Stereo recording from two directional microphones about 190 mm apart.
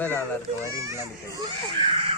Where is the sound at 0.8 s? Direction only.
15° right (ahead or behind).